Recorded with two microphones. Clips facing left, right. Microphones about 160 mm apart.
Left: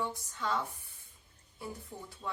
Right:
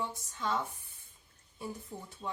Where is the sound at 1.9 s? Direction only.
10° right (ahead or behind).